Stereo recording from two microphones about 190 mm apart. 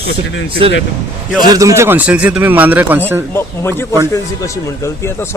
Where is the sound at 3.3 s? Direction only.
10° left (ahead or behind).